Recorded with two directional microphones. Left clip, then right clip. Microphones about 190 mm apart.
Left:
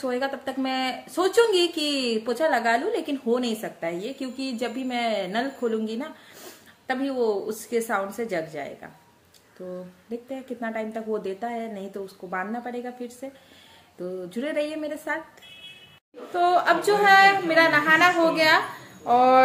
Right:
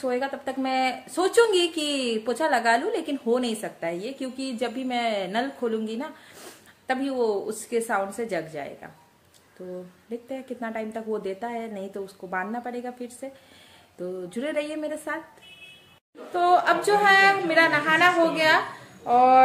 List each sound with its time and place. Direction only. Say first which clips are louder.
0.0 s a woman's voice: even; 5° right (ahead or behind)
14.3 s a woman's voice: left 1 dB; 15° right (ahead or behind)
16.3 s a woman's voice: even; 5° right (ahead or behind)
19.0 s fowl: even; 5° left (ahead or behind)